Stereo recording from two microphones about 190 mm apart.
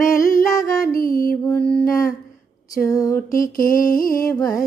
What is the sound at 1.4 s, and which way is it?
Mantra, 10° left (ahead or behind).